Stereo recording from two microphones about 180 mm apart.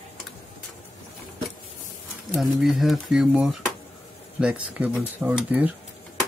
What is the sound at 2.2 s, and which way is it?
Speech, centre (ahead or behind).